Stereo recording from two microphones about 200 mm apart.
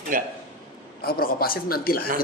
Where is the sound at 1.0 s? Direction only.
45° left (ahead or behind).